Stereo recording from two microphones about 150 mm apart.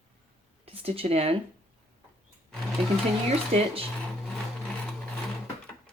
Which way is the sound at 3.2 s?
45° right (ahead or behind).